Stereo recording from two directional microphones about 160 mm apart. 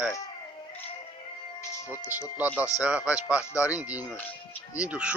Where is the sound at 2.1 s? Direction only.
10° right (ahead or behind).